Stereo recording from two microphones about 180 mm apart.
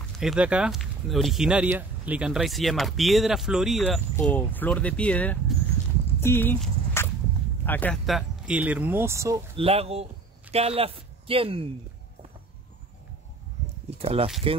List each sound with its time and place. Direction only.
0.2 s speech: 5° right (ahead or behind)
5.8 s clip-clop: 15° left (ahead or behind)
6.1 s a sound: 10° left (ahead or behind)
7.6 s speech: 10° left (ahead or behind); by 9.4 s 15° right (ahead or behind)
9.6 s a man's voice: 35° right (ahead or behind)
13.8 s a sound: 35° right (ahead or behind)